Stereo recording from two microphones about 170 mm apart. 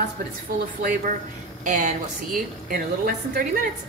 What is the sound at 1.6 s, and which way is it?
Speech, 45° right (ahead or behind).